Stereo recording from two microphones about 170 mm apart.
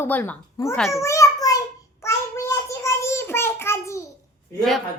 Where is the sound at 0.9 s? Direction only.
15° left (ahead or behind).